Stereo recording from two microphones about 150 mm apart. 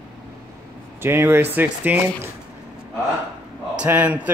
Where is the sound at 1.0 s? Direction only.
15° right (ahead or behind).